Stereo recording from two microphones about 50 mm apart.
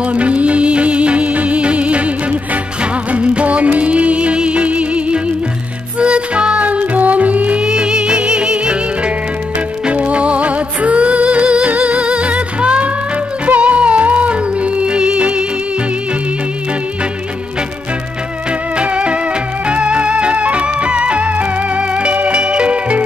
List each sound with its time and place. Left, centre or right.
0.0 s music: right
7.6 s music: centre
18.8 s music: right